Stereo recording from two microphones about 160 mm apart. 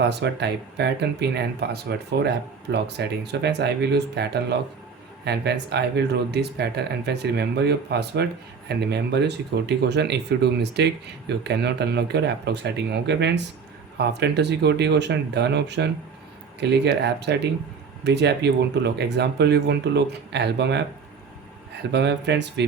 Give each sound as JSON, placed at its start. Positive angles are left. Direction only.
{"t": 0.0, "sound": "speech", "side_deg": -90}
{"t": 21.9, "sound": "speech", "side_deg": -90}